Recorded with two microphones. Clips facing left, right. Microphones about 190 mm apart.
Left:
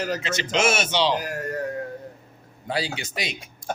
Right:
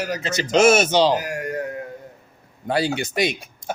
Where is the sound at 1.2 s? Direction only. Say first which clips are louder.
Right 2 dB; 10° right (ahead or behind).